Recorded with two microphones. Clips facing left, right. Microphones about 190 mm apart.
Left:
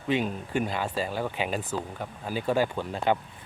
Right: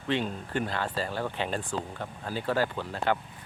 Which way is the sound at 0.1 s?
10° left (ahead or behind).